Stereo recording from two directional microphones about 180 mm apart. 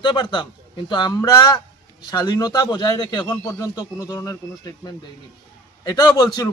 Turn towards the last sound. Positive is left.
turn(degrees=20)  # may be behind; listen again after turning